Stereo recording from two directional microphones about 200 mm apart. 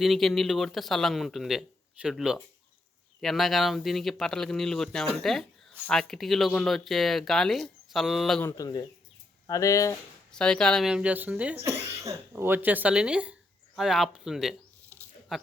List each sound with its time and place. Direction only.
0.0 s speech: centre (ahead or behind)
8.4 s speech: 15° left (ahead or behind)
10.3 s speech: 5° left (ahead or behind)
15.3 s a sound: centre (ahead or behind)